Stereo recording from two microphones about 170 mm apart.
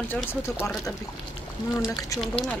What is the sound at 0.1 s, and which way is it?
Speech, 10° left (ahead or behind).